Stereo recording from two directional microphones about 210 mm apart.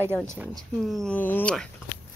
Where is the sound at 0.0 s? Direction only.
10° left (ahead or behind).